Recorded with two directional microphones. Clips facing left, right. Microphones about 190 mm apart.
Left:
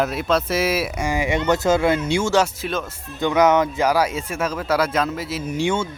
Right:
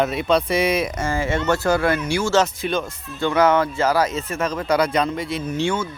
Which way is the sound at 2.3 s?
5° left (ahead or behind).